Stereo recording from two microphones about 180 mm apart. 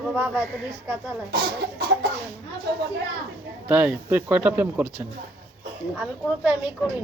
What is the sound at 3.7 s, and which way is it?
Speech, 10° right (ahead or behind).